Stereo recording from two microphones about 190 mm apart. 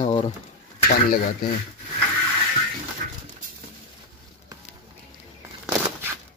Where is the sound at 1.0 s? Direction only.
45° left (ahead or behind).